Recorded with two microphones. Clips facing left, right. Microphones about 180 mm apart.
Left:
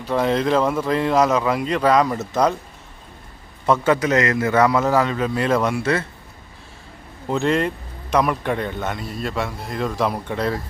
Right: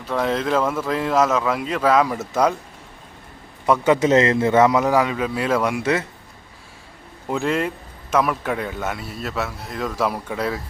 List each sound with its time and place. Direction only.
0.0 s a man's voice: centre (ahead or behind)
3.7 s a man's voice: 15° right (ahead or behind)
7.3 s a man's voice: 5° right (ahead or behind)